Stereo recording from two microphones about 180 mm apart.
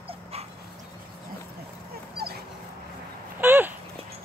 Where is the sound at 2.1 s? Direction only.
60° right (ahead or behind).